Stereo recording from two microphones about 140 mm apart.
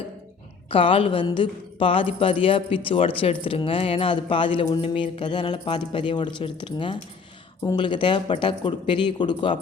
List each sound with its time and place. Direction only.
0.7 s a woman's voice: 40° left (ahead or behind)